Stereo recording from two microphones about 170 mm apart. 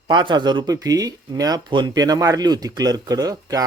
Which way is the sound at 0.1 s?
25° right (ahead or behind).